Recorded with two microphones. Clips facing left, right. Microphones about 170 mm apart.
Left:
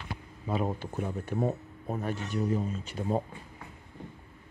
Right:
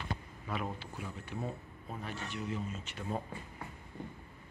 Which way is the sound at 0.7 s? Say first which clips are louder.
Left 10 dB; 50° left (ahead or behind).